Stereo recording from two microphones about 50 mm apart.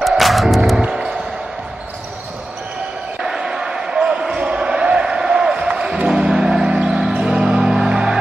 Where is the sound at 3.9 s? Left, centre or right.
Centre.